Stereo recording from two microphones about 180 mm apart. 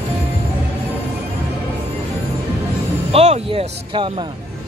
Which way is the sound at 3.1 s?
35° right (ahead or behind).